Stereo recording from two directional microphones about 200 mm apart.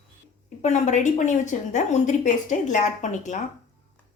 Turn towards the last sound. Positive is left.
turn(degrees=35)  # may be behind; listen again after turning